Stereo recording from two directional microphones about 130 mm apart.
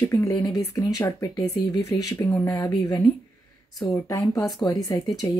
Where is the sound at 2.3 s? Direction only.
15° left (ahead or behind).